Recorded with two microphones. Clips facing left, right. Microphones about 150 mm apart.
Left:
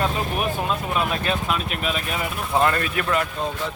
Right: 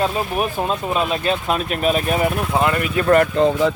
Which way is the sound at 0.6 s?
25° right (ahead or behind).